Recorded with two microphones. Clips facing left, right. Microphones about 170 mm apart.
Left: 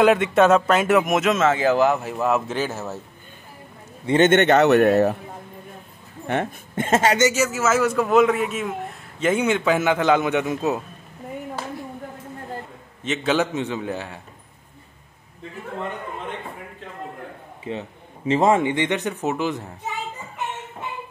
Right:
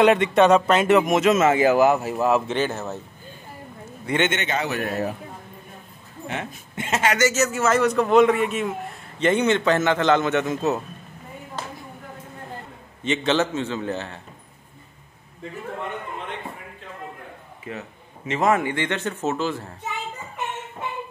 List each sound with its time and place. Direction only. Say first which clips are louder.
0.0 s speech: even; 5° left (ahead or behind)
1.4 s speech: right 1 dB; 10° right (ahead or behind); by 3.0 s 5° left (ahead or behind)
4.2 s a man's voice: left 10 dB; 55° left (ahead or behind)
6.2 s a woman's voice: left 7 dB; 55° left (ahead or behind)
7.2 s a man's voice: left 2 dB; 15° left (ahead or behind)
7.4 s a man's voice: even; 5° left (ahead or behind)
13.0 s a man's voice: even; 5° left (ahead or behind)
17.6 s a man's voice: left 4 dB; 30° left (ahead or behind)